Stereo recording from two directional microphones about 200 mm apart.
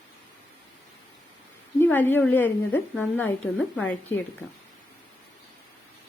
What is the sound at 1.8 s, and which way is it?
A woman's voice, 10° left (ahead or behind).